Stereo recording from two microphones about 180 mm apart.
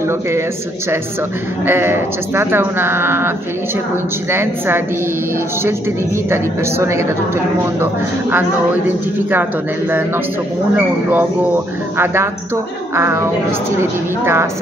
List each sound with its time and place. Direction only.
1.7 s speech: 15° right (ahead or behind)
6.3 s speech: 15° right (ahead or behind)